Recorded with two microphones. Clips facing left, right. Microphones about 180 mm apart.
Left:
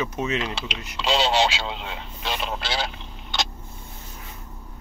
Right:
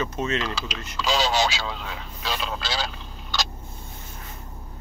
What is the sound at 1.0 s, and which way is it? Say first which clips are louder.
Speech: left 2 dB; 30° left (ahead or behind).